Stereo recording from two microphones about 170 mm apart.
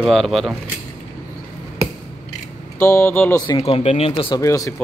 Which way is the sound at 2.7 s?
15° left (ahead or behind).